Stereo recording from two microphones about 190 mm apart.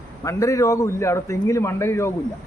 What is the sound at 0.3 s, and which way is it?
A man's voice, 15° left (ahead or behind).